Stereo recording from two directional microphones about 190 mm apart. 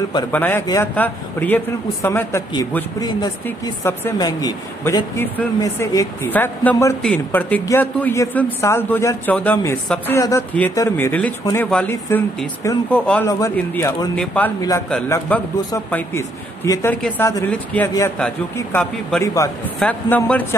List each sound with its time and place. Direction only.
0.3 s speech: 10° left (ahead or behind)
14.1 s speech: 5° left (ahead or behind)